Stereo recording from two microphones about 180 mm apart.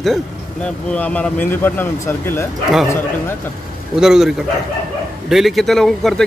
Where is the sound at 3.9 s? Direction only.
5° right (ahead or behind).